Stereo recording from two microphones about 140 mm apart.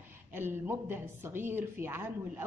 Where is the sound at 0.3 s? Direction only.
15° right (ahead or behind).